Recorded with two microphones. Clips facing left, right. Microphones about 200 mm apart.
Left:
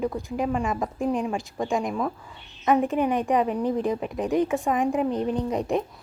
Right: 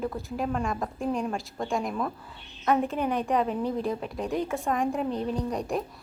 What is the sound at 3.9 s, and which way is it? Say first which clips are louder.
A woman's voice: left 5 dB; centre (ahead or behind).